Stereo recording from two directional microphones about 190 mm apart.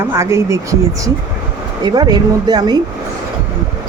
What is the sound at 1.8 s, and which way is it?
Speech, 20° right (ahead or behind).